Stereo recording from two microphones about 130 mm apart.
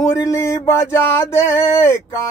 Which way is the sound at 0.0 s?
25° left (ahead or behind).